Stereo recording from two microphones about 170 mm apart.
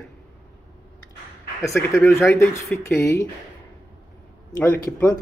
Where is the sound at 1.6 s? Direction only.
15° left (ahead or behind).